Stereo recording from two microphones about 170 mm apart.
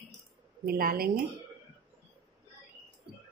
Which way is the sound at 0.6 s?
60° right (ahead or behind).